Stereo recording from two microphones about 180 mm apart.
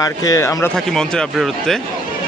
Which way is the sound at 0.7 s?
5° left (ahead or behind).